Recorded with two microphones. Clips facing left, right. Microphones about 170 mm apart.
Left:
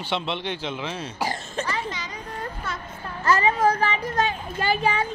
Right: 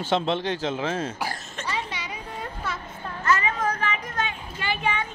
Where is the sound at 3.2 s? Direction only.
35° left (ahead or behind).